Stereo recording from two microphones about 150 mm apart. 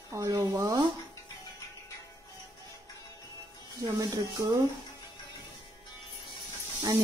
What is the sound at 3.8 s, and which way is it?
Speech, 25° right (ahead or behind).